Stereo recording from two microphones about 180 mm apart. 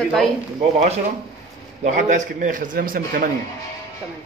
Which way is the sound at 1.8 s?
45° right (ahead or behind).